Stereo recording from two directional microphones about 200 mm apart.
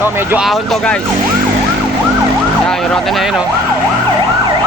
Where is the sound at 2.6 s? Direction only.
Centre (ahead or behind).